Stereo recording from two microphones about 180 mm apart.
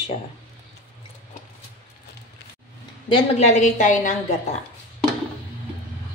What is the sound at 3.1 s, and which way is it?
A woman's voice, 40° left (ahead or behind).